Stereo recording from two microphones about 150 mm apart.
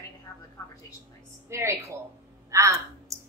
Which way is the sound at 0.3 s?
20° left (ahead or behind).